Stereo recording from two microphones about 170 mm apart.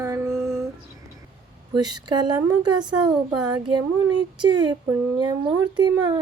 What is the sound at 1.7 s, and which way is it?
Speech, 25° right (ahead or behind).